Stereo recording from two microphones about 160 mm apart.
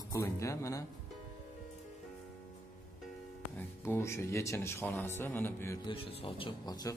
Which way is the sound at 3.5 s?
15° left (ahead or behind).